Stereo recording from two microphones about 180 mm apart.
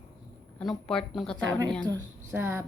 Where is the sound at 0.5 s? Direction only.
5° left (ahead or behind).